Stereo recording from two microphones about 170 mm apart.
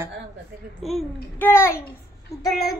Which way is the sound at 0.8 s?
Centre (ahead or behind).